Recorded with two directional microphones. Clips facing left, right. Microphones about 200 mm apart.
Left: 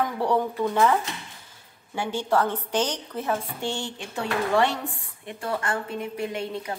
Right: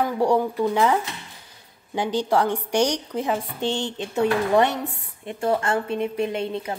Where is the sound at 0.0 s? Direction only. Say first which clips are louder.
Right 4 dB; 10° right (ahead or behind).